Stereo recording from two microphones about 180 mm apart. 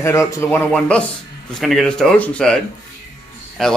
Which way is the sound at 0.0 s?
15° left (ahead or behind).